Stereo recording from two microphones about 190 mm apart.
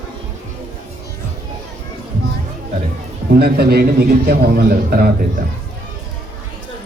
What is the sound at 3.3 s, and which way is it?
A man's voice, 55° right (ahead or behind).